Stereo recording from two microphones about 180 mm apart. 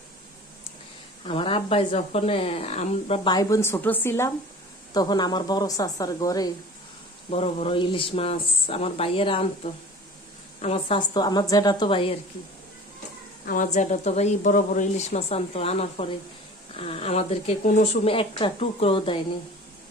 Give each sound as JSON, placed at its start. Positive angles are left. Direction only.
{"t": 1.2, "sound": "speech", "side_deg": 30}
{"t": 3.3, "sound": "a woman's voice", "side_deg": 15}
{"t": 4.9, "sound": "speech", "side_deg": 25}
{"t": 7.3, "sound": "speech", "side_deg": 35}
{"t": 10.6, "sound": "speech", "side_deg": 35}
{"t": 13.4, "sound": "speech", "side_deg": 50}
{"t": 13.7, "sound": "speech", "side_deg": 40}